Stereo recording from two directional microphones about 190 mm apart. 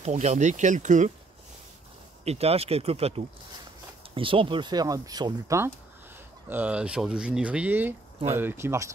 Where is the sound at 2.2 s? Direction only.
30° right (ahead or behind).